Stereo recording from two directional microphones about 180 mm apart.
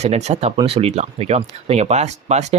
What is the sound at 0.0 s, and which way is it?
Speech, 40° right (ahead or behind).